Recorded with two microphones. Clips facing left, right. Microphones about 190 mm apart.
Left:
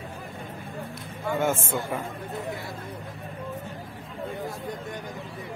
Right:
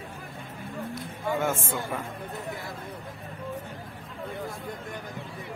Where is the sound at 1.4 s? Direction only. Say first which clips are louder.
Left 3 dB; centre (ahead or behind).